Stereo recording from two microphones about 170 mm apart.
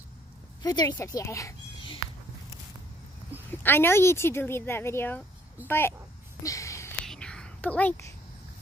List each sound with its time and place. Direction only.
0.6 s speech: 20° left (ahead or behind)
3.6 s speech: 15° left (ahead or behind)
6.4 s a sound: 20° left (ahead or behind)
7.1 s whispering: 5° left (ahead or behind)